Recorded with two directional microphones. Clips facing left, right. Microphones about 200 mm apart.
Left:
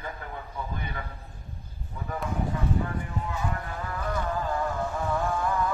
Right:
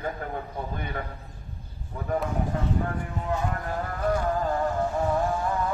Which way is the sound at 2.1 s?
45° right (ahead or behind).